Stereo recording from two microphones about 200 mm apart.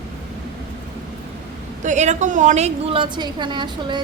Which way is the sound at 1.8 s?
35° right (ahead or behind).